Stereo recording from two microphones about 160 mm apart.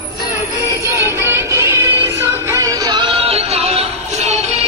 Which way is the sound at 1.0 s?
15° right (ahead or behind).